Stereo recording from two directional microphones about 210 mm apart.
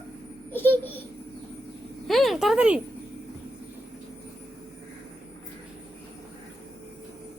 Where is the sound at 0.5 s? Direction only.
10° left (ahead or behind).